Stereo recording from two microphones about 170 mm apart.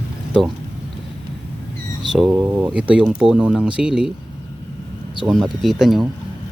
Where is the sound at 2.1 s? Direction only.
5° right (ahead or behind).